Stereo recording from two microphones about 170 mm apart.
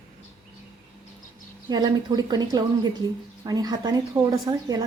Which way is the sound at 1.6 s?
25° right (ahead or behind).